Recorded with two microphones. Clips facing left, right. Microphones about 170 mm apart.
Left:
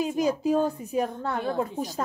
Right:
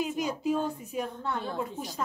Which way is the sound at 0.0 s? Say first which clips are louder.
Left 5 dB; 35° left (ahead or behind).